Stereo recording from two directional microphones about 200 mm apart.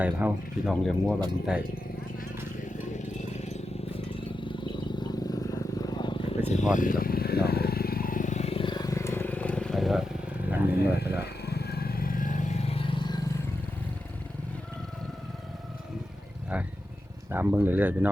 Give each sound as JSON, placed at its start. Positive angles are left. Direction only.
{"t": 0.0, "sound": "speech", "side_deg": -10}
{"t": 2.9, "sound": "clip-clop", "side_deg": 35}
{"t": 4.1, "sound": "a sound", "side_deg": 25}
{"t": 6.7, "sound": "vehicle", "side_deg": 45}
{"t": 10.5, "sound": "speech", "side_deg": -10}
{"t": 11.4, "sound": "vehicle", "side_deg": 55}
{"t": 17.2, "sound": "speech", "side_deg": -10}